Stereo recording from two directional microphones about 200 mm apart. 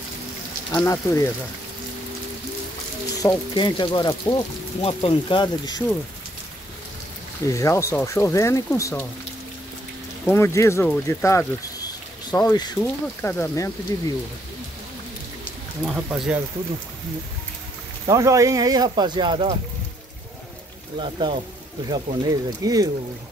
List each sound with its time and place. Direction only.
0.7 s speech: 15° left (ahead or behind)
3.2 s speech: 20° left (ahead or behind)
7.4 s speech: 15° left (ahead or behind)
10.2 s speech: 10° left (ahead or behind)
15.9 s speech: 5° right (ahead or behind)
18.0 s speech: 15° right (ahead or behind)
21.0 s speech: 25° right (ahead or behind)